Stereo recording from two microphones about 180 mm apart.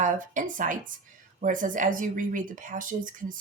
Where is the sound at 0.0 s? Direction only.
45° right (ahead or behind).